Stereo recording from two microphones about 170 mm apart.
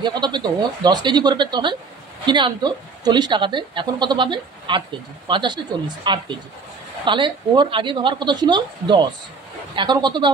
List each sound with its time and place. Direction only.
0.0 s a woman's voice: 25° right (ahead or behind)